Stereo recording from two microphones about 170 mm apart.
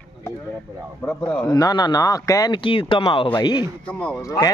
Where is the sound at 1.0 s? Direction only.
10° left (ahead or behind).